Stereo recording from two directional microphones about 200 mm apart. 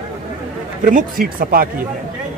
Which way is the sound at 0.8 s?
45° right (ahead or behind).